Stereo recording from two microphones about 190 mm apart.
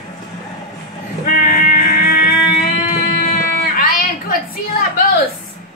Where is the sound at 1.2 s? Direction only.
45° left (ahead or behind).